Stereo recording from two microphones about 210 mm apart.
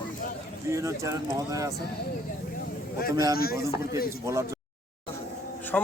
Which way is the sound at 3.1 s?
20° right (ahead or behind).